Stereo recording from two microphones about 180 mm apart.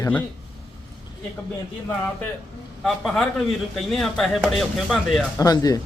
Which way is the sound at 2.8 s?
Centre (ahead or behind).